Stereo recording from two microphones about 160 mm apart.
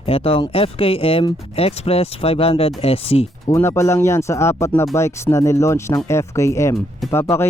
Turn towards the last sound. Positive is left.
turn(degrees=15)  # may be behind; listen again after turning